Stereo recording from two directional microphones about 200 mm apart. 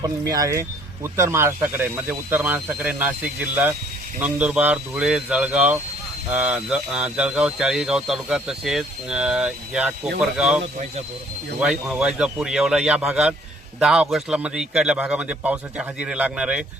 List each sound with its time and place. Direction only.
0.0 s speech: 20° right (ahead or behind)
11.6 s speech: 5° right (ahead or behind)